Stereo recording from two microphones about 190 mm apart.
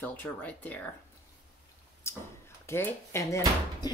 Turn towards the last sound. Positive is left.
turn(degrees=15)  # may be behind; listen again after turning